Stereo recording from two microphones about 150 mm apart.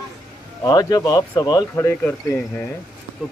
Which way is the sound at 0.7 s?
25° left (ahead or behind).